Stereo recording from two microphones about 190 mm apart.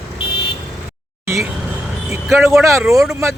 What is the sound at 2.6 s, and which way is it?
Speech, 15° right (ahead or behind).